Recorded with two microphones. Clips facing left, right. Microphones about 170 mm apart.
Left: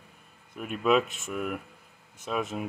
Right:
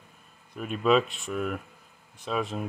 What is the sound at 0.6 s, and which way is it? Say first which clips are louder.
Speech: right 1 dB; 5° left (ahead or behind).